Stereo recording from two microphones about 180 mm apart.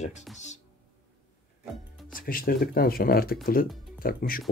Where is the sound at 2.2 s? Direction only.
55° left (ahead or behind).